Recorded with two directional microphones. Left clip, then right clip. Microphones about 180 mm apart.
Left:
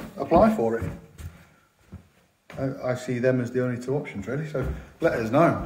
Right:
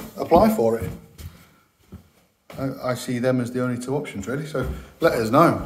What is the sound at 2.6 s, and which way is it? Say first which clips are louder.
Speech: right 2 dB; 5° right (ahead or behind).